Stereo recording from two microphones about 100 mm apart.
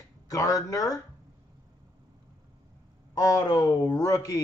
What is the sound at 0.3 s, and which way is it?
Speech, 35° left (ahead or behind).